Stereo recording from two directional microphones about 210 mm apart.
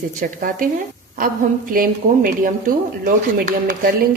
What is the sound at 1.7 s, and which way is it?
Speech, 40° right (ahead or behind).